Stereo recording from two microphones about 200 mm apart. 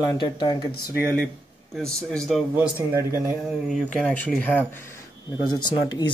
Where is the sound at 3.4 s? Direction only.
Centre (ahead or behind).